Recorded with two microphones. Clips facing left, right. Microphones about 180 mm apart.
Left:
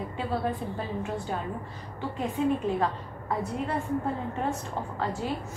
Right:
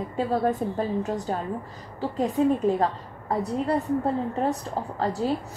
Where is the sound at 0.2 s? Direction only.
45° right (ahead or behind).